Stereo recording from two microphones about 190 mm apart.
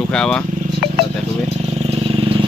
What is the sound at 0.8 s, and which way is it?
Vehicle, 55° left (ahead or behind).